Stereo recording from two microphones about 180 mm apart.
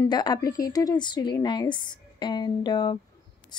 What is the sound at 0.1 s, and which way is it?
Speech, 25° left (ahead or behind).